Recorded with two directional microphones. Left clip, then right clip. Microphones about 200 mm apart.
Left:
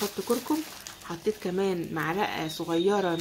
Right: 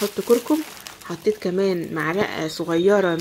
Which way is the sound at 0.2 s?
20° right (ahead or behind).